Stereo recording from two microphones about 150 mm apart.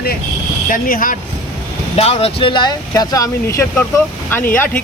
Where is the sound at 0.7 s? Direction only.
70° left (ahead or behind).